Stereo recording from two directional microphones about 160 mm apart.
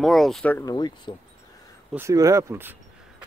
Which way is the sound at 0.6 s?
25° left (ahead or behind).